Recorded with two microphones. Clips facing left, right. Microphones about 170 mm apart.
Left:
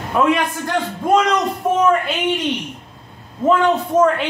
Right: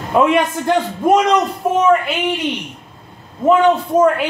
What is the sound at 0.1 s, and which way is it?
A woman's voice, 20° right (ahead or behind).